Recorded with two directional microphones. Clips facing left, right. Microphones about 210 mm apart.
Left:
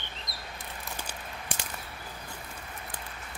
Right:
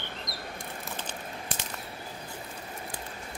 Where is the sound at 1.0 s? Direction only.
10° left (ahead or behind).